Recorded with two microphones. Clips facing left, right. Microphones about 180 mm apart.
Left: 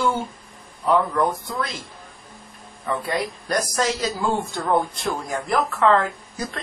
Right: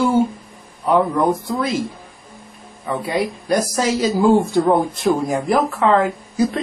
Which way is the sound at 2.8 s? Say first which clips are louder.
Right 4 dB; centre (ahead or behind).